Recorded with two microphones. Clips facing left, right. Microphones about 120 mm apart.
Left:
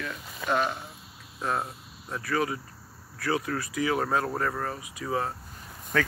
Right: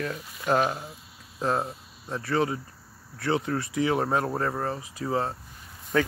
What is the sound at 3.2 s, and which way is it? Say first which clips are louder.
Speech: right 2 dB; 25° right (ahead or behind).